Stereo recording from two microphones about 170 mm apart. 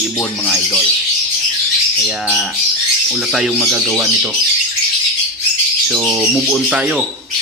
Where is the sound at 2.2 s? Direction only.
Centre (ahead or behind).